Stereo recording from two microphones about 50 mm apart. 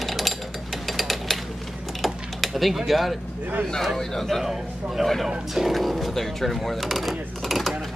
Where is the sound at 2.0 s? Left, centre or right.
Centre.